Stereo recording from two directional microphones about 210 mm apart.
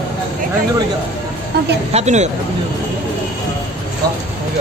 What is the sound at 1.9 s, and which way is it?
Speech, 30° right (ahead or behind).